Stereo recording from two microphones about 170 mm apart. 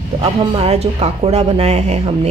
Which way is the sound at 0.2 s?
35° right (ahead or behind).